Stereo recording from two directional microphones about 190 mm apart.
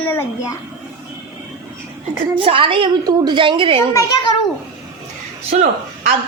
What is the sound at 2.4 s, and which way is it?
A child's voice, 30° right (ahead or behind).